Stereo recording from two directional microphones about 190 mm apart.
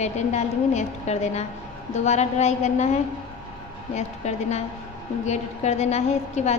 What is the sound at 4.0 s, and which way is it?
A woman's voice, 35° left (ahead or behind).